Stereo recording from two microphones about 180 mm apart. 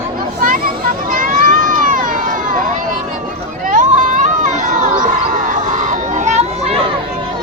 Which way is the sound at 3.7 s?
45° right (ahead or behind).